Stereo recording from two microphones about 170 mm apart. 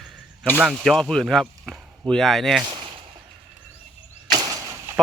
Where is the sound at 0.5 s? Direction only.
5° right (ahead or behind).